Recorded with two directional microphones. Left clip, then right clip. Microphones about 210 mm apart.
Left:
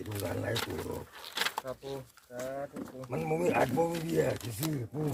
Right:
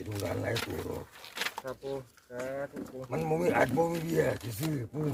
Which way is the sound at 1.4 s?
25° left (ahead or behind).